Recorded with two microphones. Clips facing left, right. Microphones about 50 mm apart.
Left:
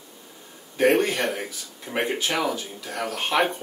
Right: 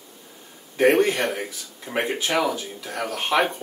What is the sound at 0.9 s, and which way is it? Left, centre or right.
Speech, centre.